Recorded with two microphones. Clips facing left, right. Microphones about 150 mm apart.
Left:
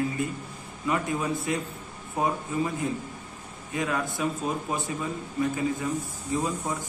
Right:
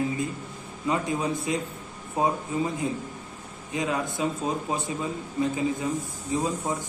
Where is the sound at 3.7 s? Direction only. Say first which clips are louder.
Right 1 dB; 20° right (ahead or behind).